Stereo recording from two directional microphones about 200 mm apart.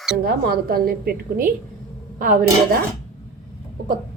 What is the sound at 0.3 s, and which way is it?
A woman's voice, 50° right (ahead or behind).